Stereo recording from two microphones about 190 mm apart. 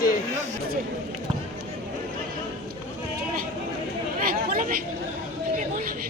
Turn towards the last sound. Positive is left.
turn(degrees=-50)  # may be behind; listen again after turning